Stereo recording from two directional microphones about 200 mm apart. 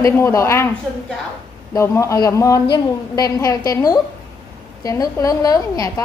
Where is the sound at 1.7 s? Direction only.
15° left (ahead or behind).